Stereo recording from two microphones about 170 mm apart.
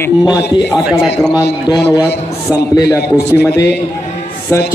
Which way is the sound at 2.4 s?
15° left (ahead or behind).